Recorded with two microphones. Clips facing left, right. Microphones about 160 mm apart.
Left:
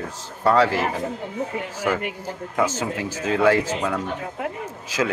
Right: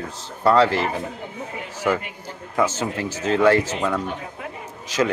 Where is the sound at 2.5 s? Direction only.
10° left (ahead or behind).